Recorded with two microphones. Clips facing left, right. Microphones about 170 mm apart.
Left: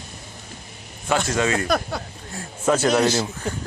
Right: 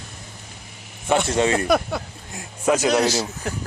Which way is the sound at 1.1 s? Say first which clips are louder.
Right 2 dB; 25° right (ahead or behind).